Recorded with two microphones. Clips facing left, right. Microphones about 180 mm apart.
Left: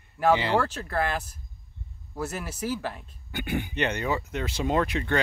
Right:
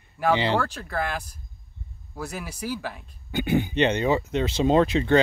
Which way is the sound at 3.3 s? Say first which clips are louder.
Right 7 dB; 25° right (ahead or behind).